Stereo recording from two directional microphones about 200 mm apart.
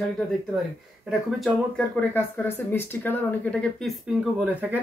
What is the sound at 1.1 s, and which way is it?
Speech, centre (ahead or behind).